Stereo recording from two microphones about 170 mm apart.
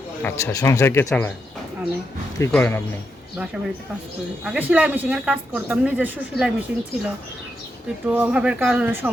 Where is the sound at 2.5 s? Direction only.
15° left (ahead or behind).